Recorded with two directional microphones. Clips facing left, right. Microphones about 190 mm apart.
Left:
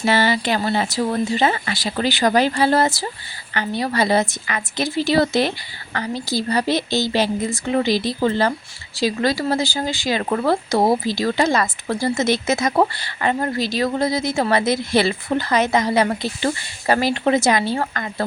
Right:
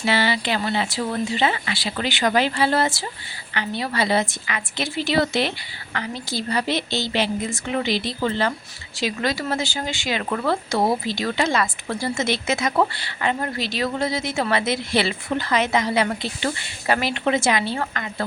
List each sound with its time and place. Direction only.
0.0 s speech: 45° left (ahead or behind)